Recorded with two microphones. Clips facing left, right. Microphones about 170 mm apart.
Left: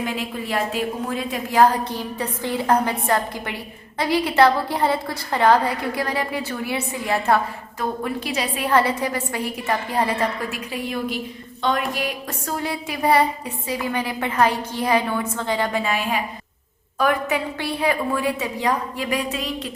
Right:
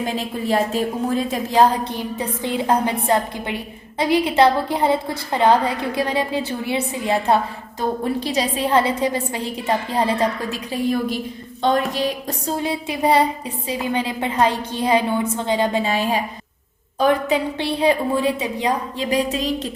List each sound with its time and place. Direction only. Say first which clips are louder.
0.0 s a woman's voice: right 3 dB; 35° right (ahead or behind)
1.9 s a woman's voice: right 2 dB; 20° right (ahead or behind)
8.5 s a woman's voice: even; 25° right (ahead or behind)
10.7 s a woman's voice: right 8 dB; 40° right (ahead or behind)